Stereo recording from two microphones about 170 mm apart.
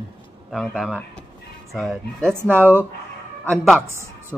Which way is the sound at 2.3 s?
10° right (ahead or behind).